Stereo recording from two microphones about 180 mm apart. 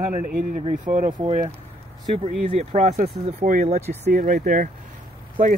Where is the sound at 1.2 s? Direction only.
35° right (ahead or behind).